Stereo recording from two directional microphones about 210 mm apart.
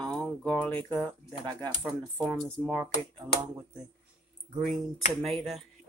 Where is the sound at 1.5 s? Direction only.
20° right (ahead or behind).